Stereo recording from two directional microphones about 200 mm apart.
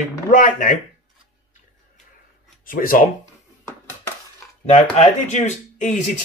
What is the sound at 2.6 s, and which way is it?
Speech, 45° left (ahead or behind).